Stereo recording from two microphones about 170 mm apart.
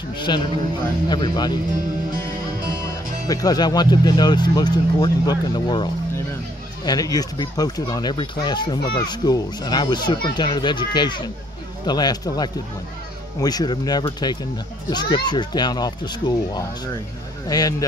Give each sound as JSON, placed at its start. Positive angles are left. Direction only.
{"t": 0.3, "sound": "speech", "side_deg": 25}
{"t": 3.3, "sound": "speech", "side_deg": 20}